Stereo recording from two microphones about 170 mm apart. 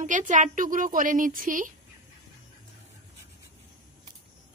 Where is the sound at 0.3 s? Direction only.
50° right (ahead or behind).